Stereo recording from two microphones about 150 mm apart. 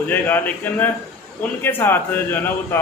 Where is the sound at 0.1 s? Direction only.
10° left (ahead or behind).